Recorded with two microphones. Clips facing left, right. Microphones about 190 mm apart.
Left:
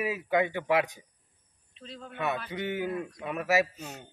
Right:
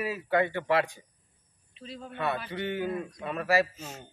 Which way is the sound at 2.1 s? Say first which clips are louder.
Even; 10° left (ahead or behind).